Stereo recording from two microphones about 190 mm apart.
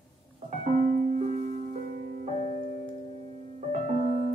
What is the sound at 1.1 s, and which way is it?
Music, 45° right (ahead or behind).